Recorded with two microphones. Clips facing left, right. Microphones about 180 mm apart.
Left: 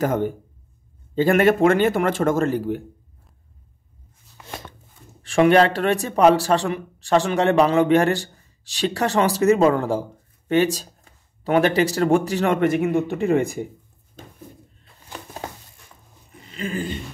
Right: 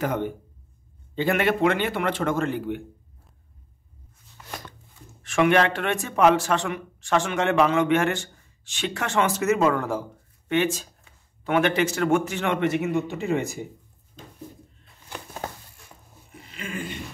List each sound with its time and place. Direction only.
0.0 s a man's voice: 45° left (ahead or behind)
4.5 s a sound: 25° left (ahead or behind)
5.2 s a man's voice: 35° left (ahead or behind); by 13.6 s 55° left (ahead or behind)
16.5 s a man's voice: 35° left (ahead or behind)